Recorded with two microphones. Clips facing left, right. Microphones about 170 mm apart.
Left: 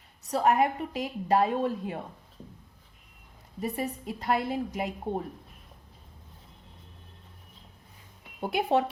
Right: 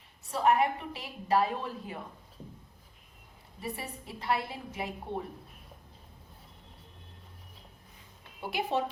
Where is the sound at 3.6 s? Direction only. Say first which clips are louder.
Left 7 dB; 40° left (ahead or behind).